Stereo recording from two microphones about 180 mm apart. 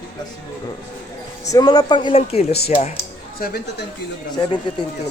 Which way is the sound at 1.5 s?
20° left (ahead or behind).